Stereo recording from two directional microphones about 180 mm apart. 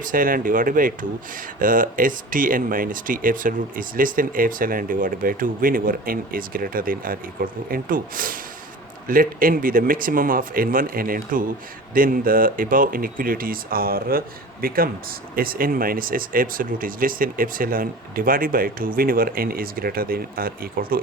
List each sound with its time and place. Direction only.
0.0 s speech: 50° right (ahead or behind)